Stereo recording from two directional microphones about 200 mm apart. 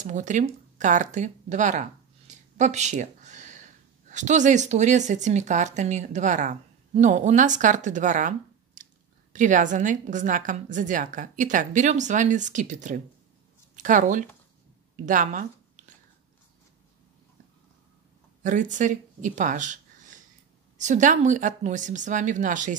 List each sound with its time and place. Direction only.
0.0 s a woman's voice: 40° right (ahead or behind)
18.4 s a woman's voice: 40° right (ahead or behind)